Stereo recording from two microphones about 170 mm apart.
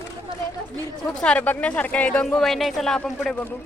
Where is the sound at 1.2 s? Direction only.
5° left (ahead or behind).